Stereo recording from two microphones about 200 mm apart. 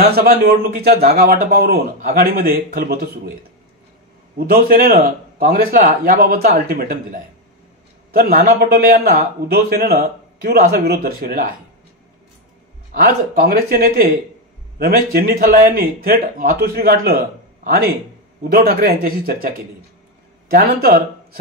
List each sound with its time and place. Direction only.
0.0 s a man's voice: 50° right (ahead or behind)
4.5 s a man's voice: 45° right (ahead or behind)
12.9 s a man's voice: 50° right (ahead or behind)